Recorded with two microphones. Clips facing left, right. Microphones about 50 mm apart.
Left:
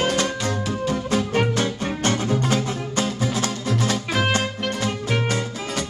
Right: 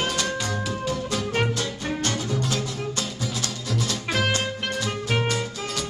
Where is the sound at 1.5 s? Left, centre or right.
Left.